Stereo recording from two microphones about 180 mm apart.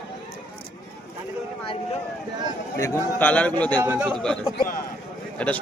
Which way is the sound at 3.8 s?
10° right (ahead or behind).